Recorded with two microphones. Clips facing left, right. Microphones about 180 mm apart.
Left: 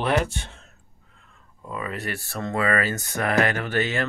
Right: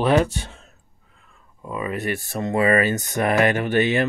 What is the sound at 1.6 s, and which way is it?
Speech, 15° right (ahead or behind).